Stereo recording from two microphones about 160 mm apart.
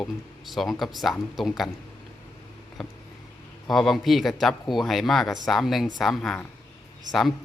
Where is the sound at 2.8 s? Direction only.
Centre (ahead or behind).